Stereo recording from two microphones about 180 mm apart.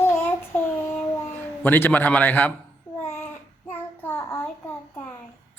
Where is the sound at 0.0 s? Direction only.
10° left (ahead or behind).